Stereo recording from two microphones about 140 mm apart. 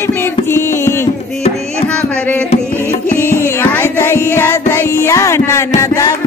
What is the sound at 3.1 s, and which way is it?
Music, 15° left (ahead or behind).